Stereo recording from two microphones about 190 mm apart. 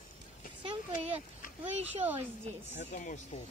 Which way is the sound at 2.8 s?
40° left (ahead or behind).